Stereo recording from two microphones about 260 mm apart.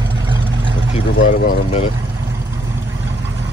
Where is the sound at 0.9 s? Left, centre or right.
Left.